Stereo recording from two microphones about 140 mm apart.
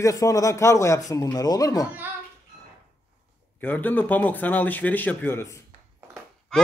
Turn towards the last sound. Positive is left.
turn(degrees=5)  # may be behind; listen again after turning